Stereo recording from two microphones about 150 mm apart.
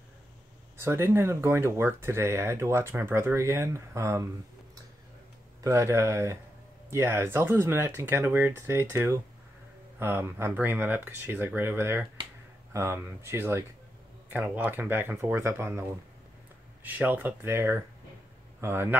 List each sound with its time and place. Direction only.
0.7 s speech: 15° right (ahead or behind)
5.6 s speech: 20° right (ahead or behind)